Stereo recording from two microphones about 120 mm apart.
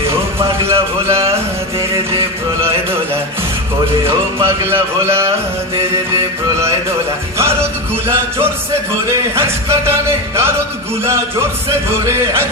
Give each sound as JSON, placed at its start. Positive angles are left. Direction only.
{"t": 0.4, "sound": "a sound", "side_deg": -20}
{"t": 4.6, "sound": "speech", "side_deg": -20}
{"t": 9.3, "sound": "speech", "side_deg": -20}